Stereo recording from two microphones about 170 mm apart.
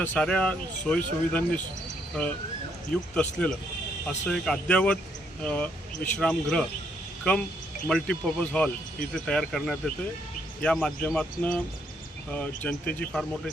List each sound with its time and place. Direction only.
0.0 s speech: 10° left (ahead or behind)
3.2 s speech: 5° left (ahead or behind)
7.9 s speech: 5° left (ahead or behind)